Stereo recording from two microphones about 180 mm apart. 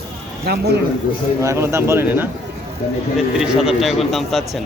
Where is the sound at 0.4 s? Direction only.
65° right (ahead or behind).